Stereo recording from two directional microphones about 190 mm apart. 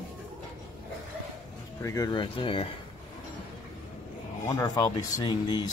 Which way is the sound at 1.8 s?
15° left (ahead or behind).